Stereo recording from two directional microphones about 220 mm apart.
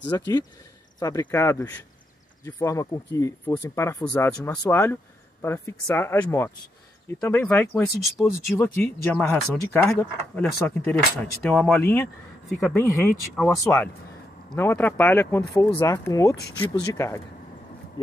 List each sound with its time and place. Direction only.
0.0 s speech: 20° left (ahead or behind)